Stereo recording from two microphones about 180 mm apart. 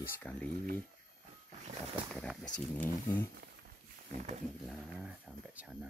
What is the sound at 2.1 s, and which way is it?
Speech, 5° left (ahead or behind).